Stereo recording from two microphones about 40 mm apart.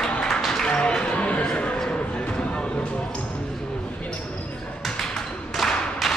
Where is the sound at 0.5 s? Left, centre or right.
Centre.